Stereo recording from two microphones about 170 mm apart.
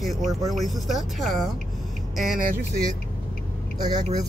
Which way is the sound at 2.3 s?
60° right (ahead or behind).